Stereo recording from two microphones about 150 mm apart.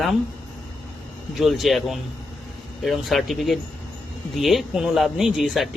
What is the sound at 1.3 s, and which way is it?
Speech, centre (ahead or behind).